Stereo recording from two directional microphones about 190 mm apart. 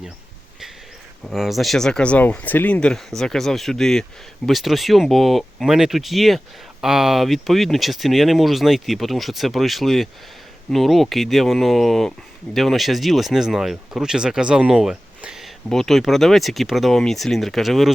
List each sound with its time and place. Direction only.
1.2 s speech: centre (ahead or behind)